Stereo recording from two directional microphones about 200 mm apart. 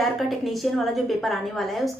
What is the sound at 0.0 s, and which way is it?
A woman's voice, centre (ahead or behind).